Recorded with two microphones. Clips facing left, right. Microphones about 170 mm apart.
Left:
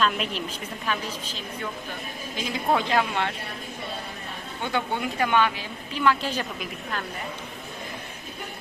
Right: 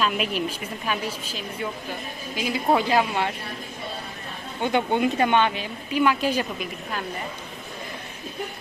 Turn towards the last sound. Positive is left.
turn(degrees=-10)  # may be behind; listen again after turning